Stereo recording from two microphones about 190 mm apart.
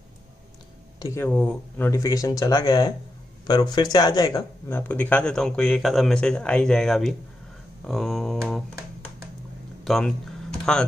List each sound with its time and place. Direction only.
0.9 s speech: 15° left (ahead or behind)
1.9 s speech: 15° left (ahead or behind); by 8.4 s centre (ahead or behind)
9.8 s speech: centre (ahead or behind)